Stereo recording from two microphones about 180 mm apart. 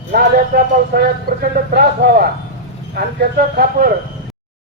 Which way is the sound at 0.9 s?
60° right (ahead or behind).